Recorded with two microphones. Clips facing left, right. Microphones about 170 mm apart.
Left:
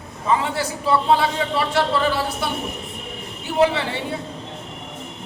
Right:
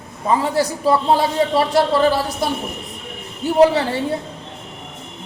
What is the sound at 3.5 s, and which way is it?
Speech, 40° right (ahead or behind).